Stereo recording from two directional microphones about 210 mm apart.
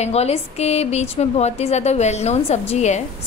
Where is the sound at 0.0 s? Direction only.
30° left (ahead or behind).